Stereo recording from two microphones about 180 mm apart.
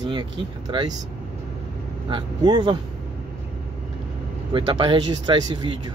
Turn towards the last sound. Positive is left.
turn(degrees=-25)  # may be behind; listen again after turning